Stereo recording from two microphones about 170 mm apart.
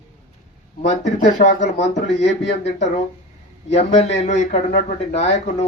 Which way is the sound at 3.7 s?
40° left (ahead or behind).